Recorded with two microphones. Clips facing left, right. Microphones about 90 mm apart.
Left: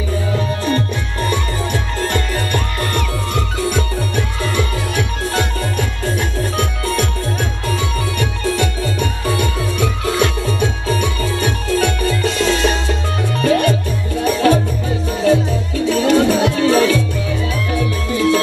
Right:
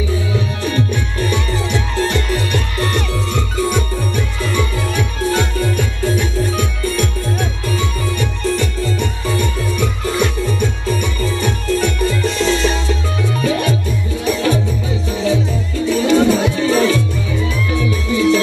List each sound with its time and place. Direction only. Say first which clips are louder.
1.3 s music: right 1 dB; 45° left (ahead or behind)
5.8 s music: right 2 dB; 55° left (ahead or behind)
8.2 s music: even; 60° left (ahead or behind)